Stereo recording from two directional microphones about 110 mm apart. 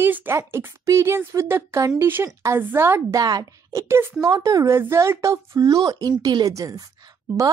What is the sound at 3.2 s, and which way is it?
Speech, 35° right (ahead or behind).